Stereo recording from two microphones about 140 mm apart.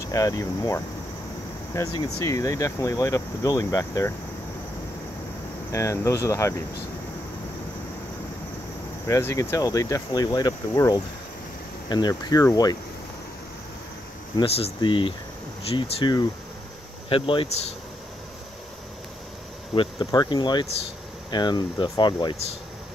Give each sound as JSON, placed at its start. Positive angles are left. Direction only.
{"t": 0.0, "sound": "speech", "side_deg": 25}
{"t": 5.7, "sound": "speech", "side_deg": 20}
{"t": 9.0, "sound": "speech", "side_deg": 20}
{"t": 14.3, "sound": "speech", "side_deg": 45}
{"t": 19.7, "sound": "speech", "side_deg": 35}